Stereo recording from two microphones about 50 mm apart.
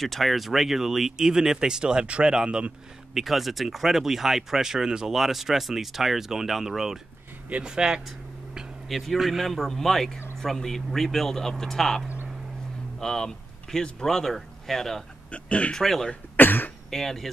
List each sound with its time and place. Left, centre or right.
0.0 s speech: centre
3.2 s speech: centre
8.8 s speech: centre
13.0 s speech: centre
15.3 s speech: left
15.8 s speech: centre
16.3 s speech: left
16.9 s speech: centre